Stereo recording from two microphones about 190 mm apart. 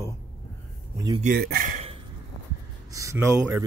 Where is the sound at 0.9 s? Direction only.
20° right (ahead or behind).